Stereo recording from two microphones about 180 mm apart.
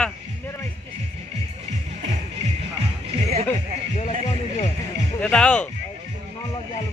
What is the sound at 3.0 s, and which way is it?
Music, 35° right (ahead or behind).